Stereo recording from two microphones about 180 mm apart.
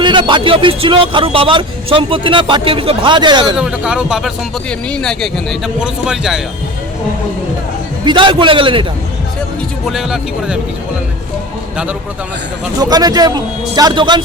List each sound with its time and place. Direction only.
0.0 s speech: 25° right (ahead or behind)
3.6 s speech: 5° right (ahead or behind)
8.0 s speech: 25° right (ahead or behind)
9.8 s speech: centre (ahead or behind)
12.8 s speech: 20° right (ahead or behind)